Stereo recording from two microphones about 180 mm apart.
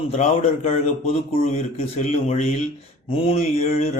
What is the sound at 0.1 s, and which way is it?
A man's voice, 35° left (ahead or behind).